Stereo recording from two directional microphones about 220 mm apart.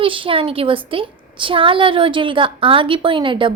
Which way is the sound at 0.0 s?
25° right (ahead or behind).